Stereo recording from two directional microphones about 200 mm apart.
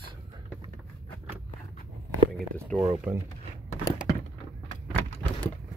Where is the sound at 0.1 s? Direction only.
25° right (ahead or behind).